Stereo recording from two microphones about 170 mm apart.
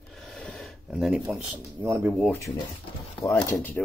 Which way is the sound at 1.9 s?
15° right (ahead or behind).